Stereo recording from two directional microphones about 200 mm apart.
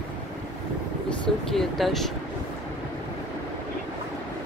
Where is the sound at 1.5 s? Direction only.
Centre (ahead or behind).